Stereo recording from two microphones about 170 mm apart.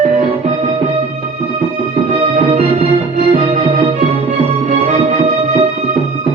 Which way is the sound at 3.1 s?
45° right (ahead or behind).